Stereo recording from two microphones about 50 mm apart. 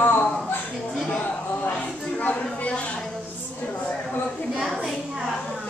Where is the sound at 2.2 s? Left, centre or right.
Left.